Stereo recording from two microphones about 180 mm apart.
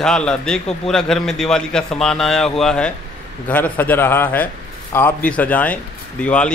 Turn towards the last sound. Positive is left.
turn(degrees=5)  # may be behind; listen again after turning